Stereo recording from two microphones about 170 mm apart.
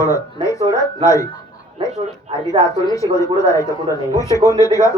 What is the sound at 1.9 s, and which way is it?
Speech, 35° right (ahead or behind).